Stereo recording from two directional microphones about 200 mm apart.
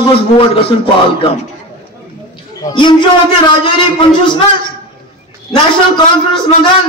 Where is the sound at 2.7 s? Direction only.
25° left (ahead or behind).